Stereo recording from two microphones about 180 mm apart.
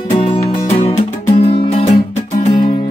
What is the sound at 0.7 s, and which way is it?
Music, 35° left (ahead or behind).